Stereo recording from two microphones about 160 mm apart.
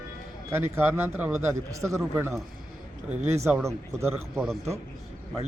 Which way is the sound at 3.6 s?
20° right (ahead or behind).